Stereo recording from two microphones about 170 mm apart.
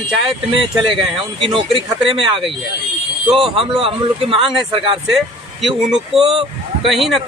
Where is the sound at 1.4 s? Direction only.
30° right (ahead or behind).